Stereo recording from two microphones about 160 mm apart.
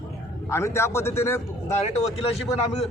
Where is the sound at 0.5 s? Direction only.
15° left (ahead or behind).